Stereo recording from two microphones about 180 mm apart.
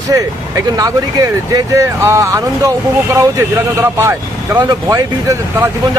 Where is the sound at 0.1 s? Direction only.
20° right (ahead or behind).